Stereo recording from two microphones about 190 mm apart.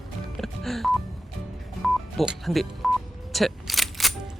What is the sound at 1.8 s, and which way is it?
Telephone dialing, centre (ahead or behind).